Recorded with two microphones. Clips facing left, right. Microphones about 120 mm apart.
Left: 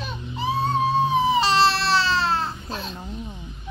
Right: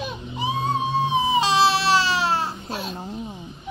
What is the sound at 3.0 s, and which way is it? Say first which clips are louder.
Speech: right 3 dB; 35° right (ahead or behind).